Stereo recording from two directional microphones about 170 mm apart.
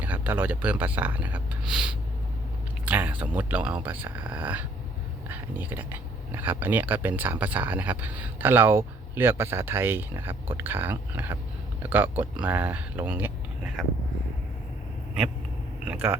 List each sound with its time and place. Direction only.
0.0 s speech: 10° right (ahead or behind)
15.9 s speech: 10° right (ahead or behind)